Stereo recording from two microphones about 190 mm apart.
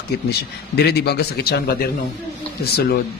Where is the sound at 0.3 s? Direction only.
60° left (ahead or behind).